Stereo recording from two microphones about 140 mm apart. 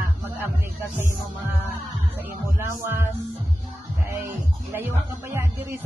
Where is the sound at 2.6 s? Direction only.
15° right (ahead or behind).